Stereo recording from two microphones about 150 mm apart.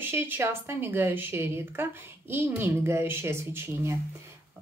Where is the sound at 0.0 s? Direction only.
15° right (ahead or behind).